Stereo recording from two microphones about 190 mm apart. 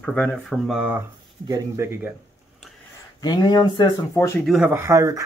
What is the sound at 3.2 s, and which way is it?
Speech, 20° left (ahead or behind).